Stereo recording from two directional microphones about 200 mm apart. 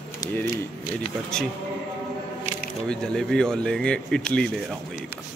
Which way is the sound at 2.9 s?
5° left (ahead or behind).